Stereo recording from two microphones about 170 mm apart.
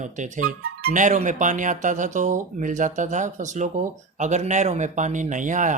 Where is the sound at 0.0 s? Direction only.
45° right (ahead or behind).